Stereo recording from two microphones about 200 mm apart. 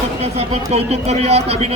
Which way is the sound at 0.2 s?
30° right (ahead or behind).